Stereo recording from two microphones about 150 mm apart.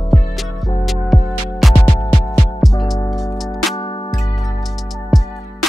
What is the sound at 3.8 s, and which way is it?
Music, 30° left (ahead or behind).